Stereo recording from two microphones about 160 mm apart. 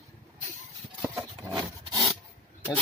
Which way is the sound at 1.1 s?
25° right (ahead or behind).